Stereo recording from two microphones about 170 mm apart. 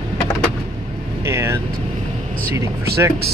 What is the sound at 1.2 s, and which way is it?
Speech, 15° right (ahead or behind).